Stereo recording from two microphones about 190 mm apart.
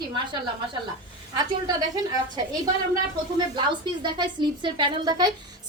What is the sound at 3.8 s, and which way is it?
A woman's voice, 25° right (ahead or behind).